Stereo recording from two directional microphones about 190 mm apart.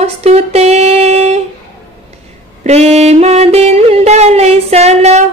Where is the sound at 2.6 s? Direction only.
35° right (ahead or behind).